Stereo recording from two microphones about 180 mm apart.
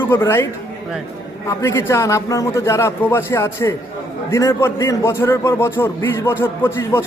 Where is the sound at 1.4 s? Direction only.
15° left (ahead or behind).